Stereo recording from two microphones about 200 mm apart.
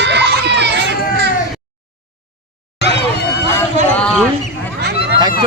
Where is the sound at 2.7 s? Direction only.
55° left (ahead or behind).